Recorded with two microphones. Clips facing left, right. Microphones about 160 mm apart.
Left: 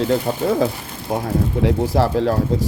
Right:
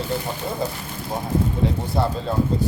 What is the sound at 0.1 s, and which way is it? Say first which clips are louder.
Speech: left 8 dB; 85° left.